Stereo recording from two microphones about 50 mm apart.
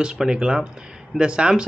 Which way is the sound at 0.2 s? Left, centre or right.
Centre.